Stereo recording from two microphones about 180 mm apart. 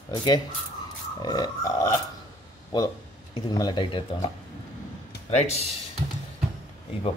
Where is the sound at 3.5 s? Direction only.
25° left (ahead or behind).